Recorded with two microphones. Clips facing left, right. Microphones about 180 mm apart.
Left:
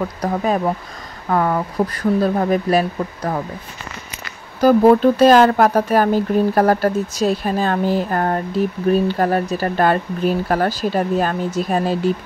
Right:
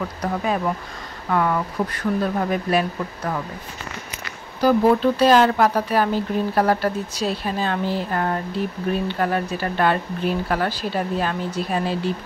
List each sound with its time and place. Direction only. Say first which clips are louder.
0.2 s speech: left 4 dB; 35° left (ahead or behind)
4.6 s speech: left 5 dB; 50° left (ahead or behind)